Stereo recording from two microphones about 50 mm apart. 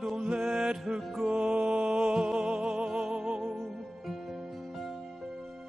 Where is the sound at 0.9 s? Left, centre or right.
Right.